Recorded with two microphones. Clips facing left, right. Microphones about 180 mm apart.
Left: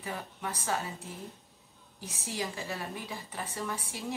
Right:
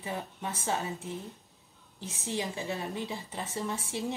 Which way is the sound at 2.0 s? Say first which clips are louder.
Right 2 dB; 20° right (ahead or behind).